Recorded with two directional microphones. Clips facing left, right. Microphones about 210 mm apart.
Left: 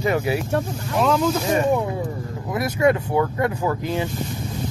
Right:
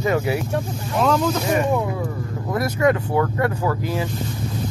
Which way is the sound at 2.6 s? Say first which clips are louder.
Left 1 dB; 25° left (ahead or behind).